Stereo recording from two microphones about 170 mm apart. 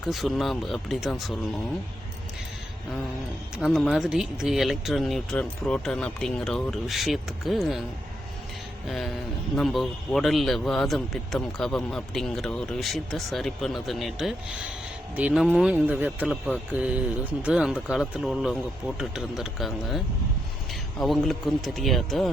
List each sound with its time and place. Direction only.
0.0 s a man's voice: centre (ahead or behind)
3.6 s a man's voice: centre (ahead or behind)
9.6 s a man's voice: centre (ahead or behind)
21.0 s a man's voice: centre (ahead or behind)